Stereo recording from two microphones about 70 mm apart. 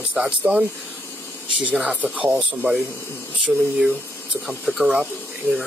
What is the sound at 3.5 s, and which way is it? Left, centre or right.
Speech, centre.